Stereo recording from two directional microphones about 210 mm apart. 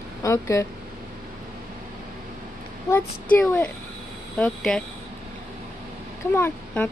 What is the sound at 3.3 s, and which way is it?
A woman's voice, 10° left (ahead or behind).